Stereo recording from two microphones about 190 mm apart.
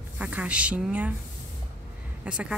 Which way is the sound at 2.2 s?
5° right (ahead or behind).